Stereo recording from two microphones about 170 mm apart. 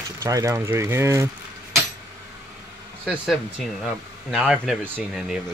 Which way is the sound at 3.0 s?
Centre (ahead or behind).